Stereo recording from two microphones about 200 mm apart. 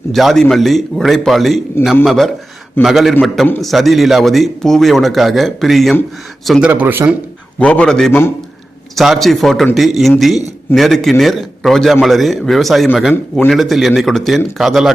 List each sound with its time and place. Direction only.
0.1 s a man's voice: centre (ahead or behind)
7.6 s a man's voice: 5° left (ahead or behind)